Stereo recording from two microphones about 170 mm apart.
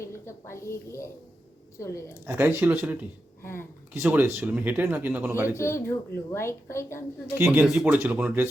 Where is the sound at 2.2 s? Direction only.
15° right (ahead or behind).